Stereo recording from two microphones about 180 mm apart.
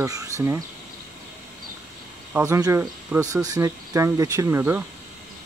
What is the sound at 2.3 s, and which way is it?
Speech, 15° right (ahead or behind).